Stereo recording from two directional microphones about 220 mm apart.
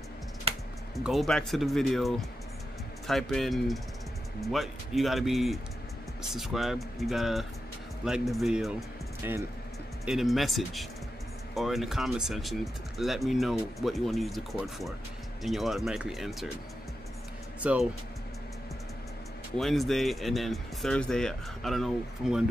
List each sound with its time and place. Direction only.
0.5 s music: 25° right (ahead or behind)
0.9 s speech: centre (ahead or behind)
17.6 s speech: 5° right (ahead or behind)
19.5 s speech: centre (ahead or behind)